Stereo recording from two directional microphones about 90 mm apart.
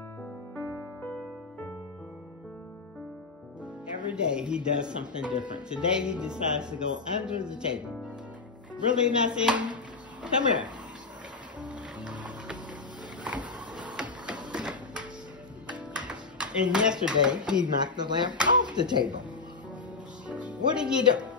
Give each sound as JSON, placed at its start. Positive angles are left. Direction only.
{"t": 3.8, "sound": "speech", "side_deg": -10}
{"t": 11.6, "sound": "music", "side_deg": -15}
{"t": 13.2, "sound": "a sound", "side_deg": -15}
{"t": 13.9, "sound": "music", "side_deg": -10}
{"t": 14.5, "sound": "printer", "side_deg": -10}
{"t": 15.6, "sound": "music", "side_deg": -10}
{"t": 16.1, "sound": "a sound", "side_deg": -10}
{"t": 17.2, "sound": "speech", "side_deg": -10}
{"t": 17.9, "sound": "speech", "side_deg": -55}
{"t": 20.4, "sound": "speech", "side_deg": -10}